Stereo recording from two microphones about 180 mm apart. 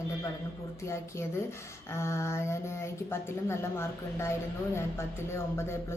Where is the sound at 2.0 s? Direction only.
15° left (ahead or behind).